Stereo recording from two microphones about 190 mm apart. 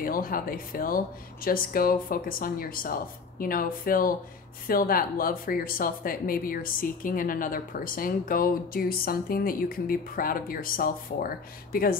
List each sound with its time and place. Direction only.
0.0 s speech: 50° left (ahead or behind)